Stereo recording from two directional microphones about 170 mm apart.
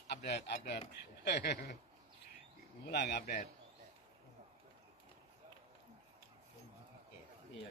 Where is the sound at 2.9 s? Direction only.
85° left.